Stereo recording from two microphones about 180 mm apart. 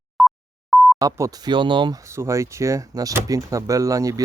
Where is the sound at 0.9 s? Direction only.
20° right (ahead or behind).